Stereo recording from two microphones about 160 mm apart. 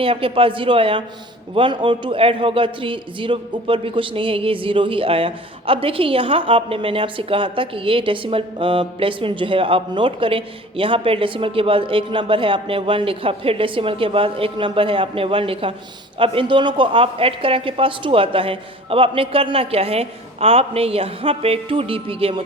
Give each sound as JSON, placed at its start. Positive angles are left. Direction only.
{"t": 0.0, "sound": "a man's voice", "side_deg": -35}